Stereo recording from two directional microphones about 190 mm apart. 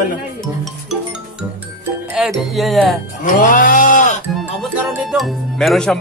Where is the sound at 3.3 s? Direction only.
45° left (ahead or behind).